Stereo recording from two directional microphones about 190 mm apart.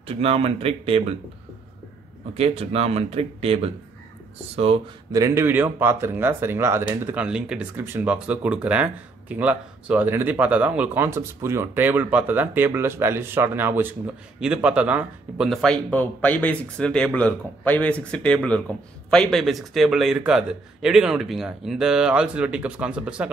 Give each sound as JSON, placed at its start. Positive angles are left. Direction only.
{"t": 0.0, "sound": "speech", "side_deg": -30}
{"t": 2.3, "sound": "speech", "side_deg": -30}
{"t": 5.1, "sound": "speech", "side_deg": -15}